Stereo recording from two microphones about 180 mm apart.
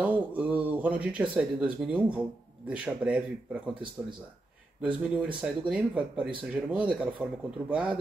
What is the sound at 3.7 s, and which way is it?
Speech, 25° right (ahead or behind).